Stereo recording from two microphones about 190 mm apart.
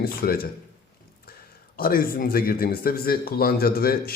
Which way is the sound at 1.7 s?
50° left (ahead or behind).